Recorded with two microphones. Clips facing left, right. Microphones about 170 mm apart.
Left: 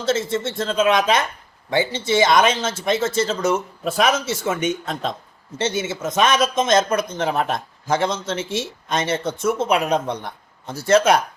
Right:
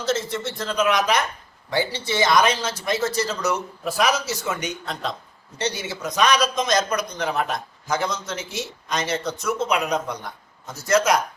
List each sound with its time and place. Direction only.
0.0 s speech: 25° left (ahead or behind)